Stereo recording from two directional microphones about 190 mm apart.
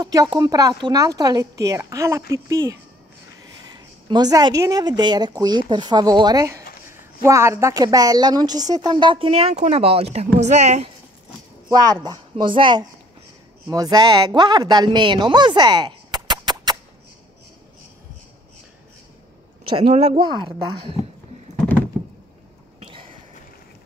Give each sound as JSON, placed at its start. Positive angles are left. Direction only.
{"t": 0.0, "sound": "a woman's voice", "side_deg": -20}
{"t": 4.1, "sound": "a woman's voice", "side_deg": -20}
{"t": 11.8, "sound": "a woman's voice", "side_deg": -20}
{"t": 19.9, "sound": "a woman's voice", "side_deg": -35}
{"t": 22.8, "sound": "a sound", "side_deg": -25}